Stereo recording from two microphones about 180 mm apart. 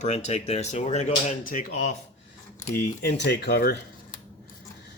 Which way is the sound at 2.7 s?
65° left (ahead or behind).